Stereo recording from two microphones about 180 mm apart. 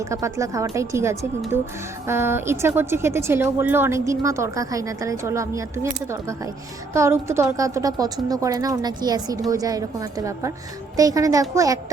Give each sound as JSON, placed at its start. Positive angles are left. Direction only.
{"t": 0.0, "sound": "a woman's voice", "side_deg": -15}